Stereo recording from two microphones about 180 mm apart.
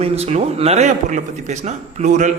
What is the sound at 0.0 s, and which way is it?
A man's voice, 35° right (ahead or behind).